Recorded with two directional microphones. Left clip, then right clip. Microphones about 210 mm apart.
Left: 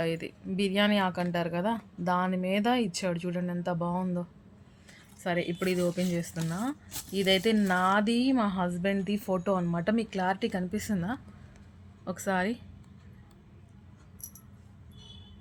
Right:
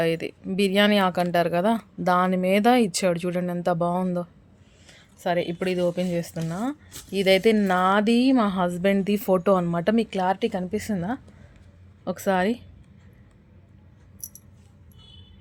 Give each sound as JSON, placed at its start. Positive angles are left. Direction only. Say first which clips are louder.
{"t": 0.0, "sound": "speech", "louder": "right 8 dB", "side_deg": -40}